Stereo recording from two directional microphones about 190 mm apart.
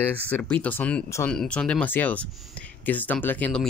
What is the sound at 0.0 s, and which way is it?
Speech, 5° left (ahead or behind).